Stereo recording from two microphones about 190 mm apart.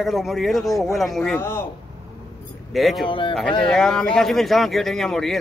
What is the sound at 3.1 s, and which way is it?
Speech, 25° left (ahead or behind).